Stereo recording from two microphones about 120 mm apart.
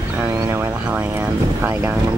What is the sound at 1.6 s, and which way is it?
Speech, 15° right (ahead or behind).